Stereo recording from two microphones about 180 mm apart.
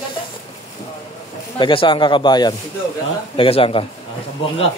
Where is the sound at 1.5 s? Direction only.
25° left (ahead or behind).